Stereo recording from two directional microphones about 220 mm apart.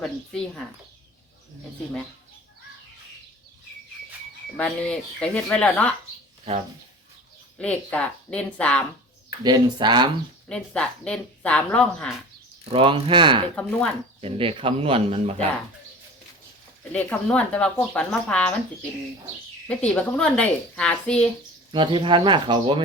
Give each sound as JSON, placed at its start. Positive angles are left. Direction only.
{"t": 0.0, "sound": "speech", "side_deg": 5}
{"t": 4.5, "sound": "speech", "side_deg": 5}
{"t": 7.6, "sound": "speech", "side_deg": 5}
{"t": 9.4, "sound": "speech", "side_deg": -20}
{"t": 10.5, "sound": "speech", "side_deg": 5}
{"t": 12.6, "sound": "speech", "side_deg": -25}
{"t": 13.6, "sound": "speech", "side_deg": 5}
{"t": 14.2, "sound": "speech", "side_deg": -25}
{"t": 16.9, "sound": "speech", "side_deg": 5}
{"t": 19.6, "sound": "speech", "side_deg": 5}
{"t": 21.7, "sound": "speech", "side_deg": -20}